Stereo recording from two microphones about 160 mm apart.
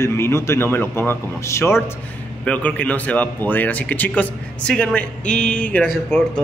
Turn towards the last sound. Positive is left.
turn(degrees=10)  # may be behind; listen again after turning